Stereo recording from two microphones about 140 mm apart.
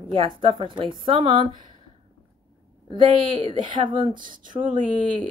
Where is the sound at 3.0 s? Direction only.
35° right (ahead or behind).